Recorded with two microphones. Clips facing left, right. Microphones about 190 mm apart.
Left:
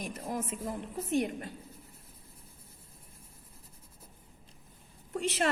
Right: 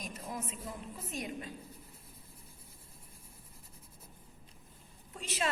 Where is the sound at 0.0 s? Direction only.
65° left (ahead or behind).